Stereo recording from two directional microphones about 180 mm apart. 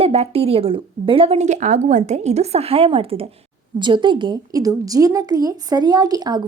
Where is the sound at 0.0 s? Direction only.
35° right (ahead or behind).